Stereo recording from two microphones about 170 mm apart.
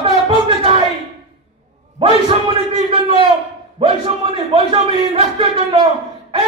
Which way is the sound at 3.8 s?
30° right (ahead or behind).